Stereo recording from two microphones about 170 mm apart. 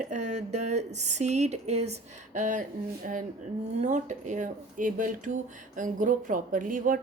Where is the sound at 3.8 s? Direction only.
45° right (ahead or behind).